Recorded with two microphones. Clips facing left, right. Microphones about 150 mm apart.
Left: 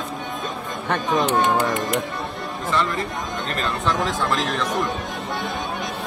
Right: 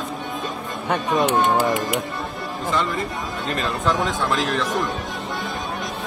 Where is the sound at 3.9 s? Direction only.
Centre (ahead or behind).